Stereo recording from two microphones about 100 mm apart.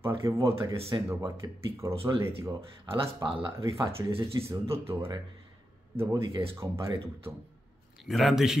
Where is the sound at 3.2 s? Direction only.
40° right (ahead or behind).